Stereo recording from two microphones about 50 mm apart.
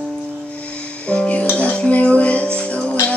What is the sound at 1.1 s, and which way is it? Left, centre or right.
Music, left.